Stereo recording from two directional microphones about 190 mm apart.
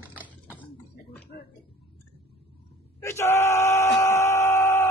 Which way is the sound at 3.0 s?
15° left (ahead or behind).